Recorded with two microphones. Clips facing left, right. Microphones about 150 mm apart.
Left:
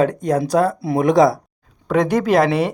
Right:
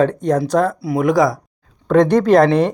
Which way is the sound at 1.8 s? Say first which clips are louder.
Right 4 dB; 5° left (ahead or behind).